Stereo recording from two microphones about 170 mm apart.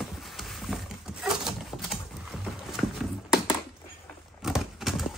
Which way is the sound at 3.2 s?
5° right (ahead or behind).